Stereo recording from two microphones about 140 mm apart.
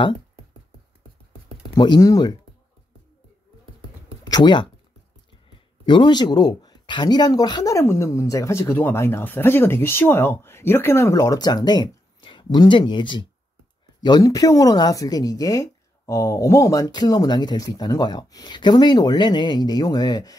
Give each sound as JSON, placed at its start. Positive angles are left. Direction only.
{"t": 1.8, "sound": "speech", "side_deg": 25}
{"t": 4.2, "sound": "speech", "side_deg": 30}
{"t": 5.9, "sound": "speech", "side_deg": 35}